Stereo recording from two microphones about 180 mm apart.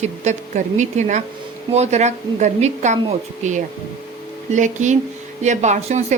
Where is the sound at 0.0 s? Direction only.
40° right (ahead or behind).